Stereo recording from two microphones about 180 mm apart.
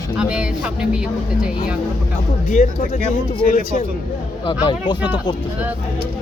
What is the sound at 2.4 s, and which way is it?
Speech, 45° left (ahead or behind).